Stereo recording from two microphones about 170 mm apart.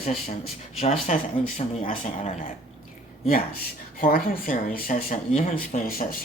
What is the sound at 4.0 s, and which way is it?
Speech, 60° left (ahead or behind).